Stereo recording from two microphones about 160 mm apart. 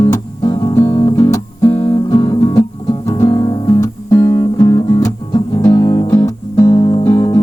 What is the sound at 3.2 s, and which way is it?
Music, 20° left (ahead or behind).